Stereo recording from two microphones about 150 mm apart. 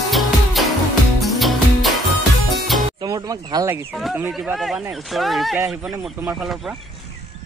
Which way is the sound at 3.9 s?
Centre (ahead or behind).